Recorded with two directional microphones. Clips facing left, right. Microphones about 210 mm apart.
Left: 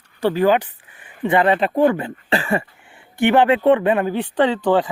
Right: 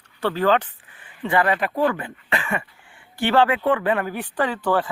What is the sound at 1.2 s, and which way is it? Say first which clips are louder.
Speech: left 5 dB; 25° left (ahead or behind).